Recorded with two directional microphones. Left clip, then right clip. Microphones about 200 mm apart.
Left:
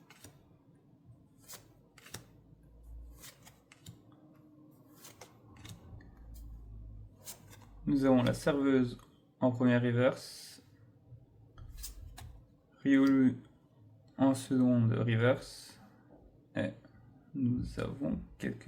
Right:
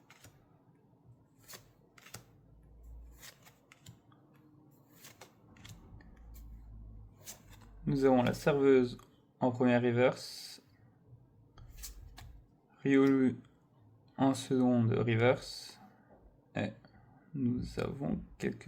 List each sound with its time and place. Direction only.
7.9 s speech: 35° right (ahead or behind)
12.8 s speech: 35° right (ahead or behind)
16.5 s burping: 40° right (ahead or behind)
17.4 s speech: 35° right (ahead or behind)